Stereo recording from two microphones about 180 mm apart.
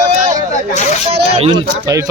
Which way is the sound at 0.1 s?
40° right (ahead or behind).